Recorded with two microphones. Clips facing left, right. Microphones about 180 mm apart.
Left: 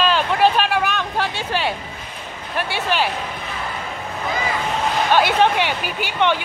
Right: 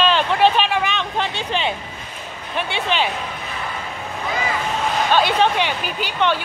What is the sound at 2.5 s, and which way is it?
Speech, 10° left (ahead or behind).